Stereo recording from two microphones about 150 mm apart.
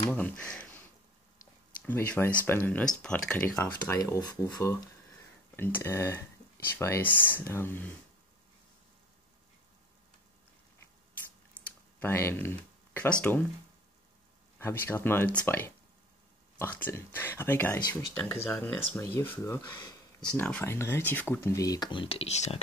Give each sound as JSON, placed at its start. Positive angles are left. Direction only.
{"t": 0.1, "sound": "speech", "side_deg": 10}
{"t": 1.9, "sound": "speech", "side_deg": 15}
{"t": 11.6, "sound": "a sound", "side_deg": 10}
{"t": 12.0, "sound": "speech", "side_deg": 15}
{"t": 14.6, "sound": "speech", "side_deg": 15}
{"t": 20.3, "sound": "speech", "side_deg": 10}